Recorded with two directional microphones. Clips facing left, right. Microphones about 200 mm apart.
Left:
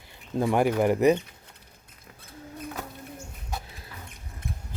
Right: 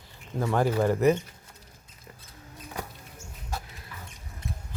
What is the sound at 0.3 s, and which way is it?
Speech, 15° left (ahead or behind).